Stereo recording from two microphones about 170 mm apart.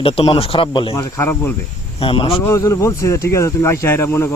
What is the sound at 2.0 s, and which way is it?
Speech, 30° left (ahead or behind).